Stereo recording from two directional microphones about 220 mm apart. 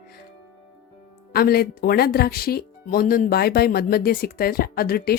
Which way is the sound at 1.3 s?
45° left (ahead or behind).